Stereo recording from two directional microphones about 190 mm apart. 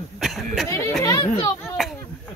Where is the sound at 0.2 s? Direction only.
Centre (ahead or behind).